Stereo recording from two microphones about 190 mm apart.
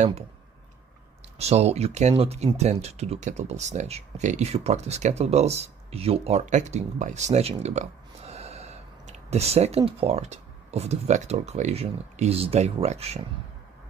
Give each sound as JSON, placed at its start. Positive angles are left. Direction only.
{"t": 1.4, "sound": "speech", "side_deg": -35}